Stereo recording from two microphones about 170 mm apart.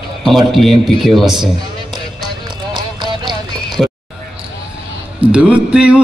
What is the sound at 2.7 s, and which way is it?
Clip-clop, 25° right (ahead or behind).